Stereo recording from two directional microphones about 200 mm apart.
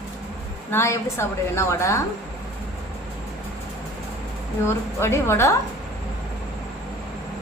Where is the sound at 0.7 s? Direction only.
15° left (ahead or behind).